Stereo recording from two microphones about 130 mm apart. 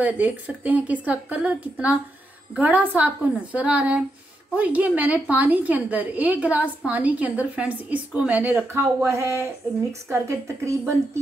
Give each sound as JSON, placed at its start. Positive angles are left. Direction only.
{"t": 0.0, "sound": "a woman's voice", "side_deg": -10}